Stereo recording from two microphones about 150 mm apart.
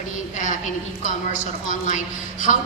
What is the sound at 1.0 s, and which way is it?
Speech, 60° left (ahead or behind).